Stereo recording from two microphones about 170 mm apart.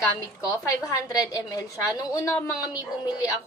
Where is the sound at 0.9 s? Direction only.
20° left (ahead or behind).